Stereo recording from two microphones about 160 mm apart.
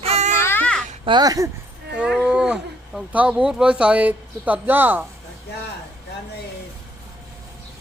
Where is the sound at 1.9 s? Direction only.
10° right (ahead or behind).